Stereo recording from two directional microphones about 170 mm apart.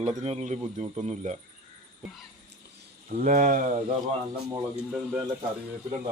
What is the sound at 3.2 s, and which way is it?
Speech, 50° right (ahead or behind).